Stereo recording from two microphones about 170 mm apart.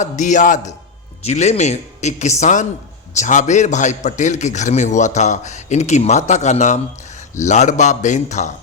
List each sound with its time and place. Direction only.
0.0 s a man's voice: 45° left (ahead or behind)